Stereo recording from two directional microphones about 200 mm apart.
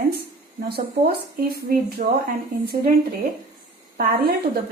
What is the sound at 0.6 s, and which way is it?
Speech, 50° right (ahead or behind).